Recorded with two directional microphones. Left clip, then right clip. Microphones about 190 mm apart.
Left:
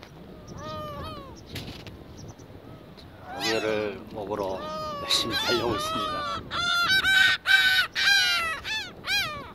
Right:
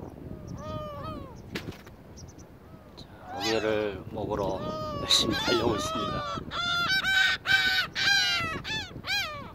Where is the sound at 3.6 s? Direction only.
Centre (ahead or behind).